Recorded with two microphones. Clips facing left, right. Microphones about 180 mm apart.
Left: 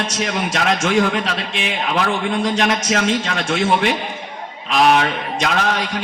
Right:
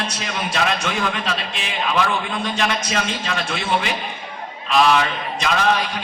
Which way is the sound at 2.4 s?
90° left.